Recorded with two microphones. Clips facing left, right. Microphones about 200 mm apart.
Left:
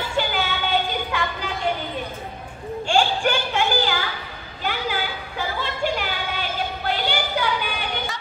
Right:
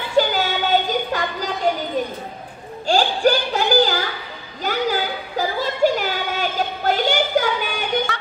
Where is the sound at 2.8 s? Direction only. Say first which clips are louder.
Right 4 dB; 40° right (ahead or behind).